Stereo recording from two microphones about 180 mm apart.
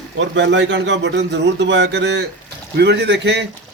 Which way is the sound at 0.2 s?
80° right.